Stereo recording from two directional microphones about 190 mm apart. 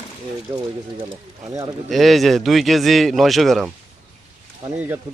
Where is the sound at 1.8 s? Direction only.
Centre (ahead or behind).